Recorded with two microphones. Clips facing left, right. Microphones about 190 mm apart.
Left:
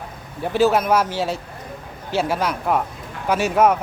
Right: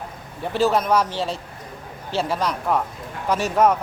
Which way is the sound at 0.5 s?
5° left (ahead or behind).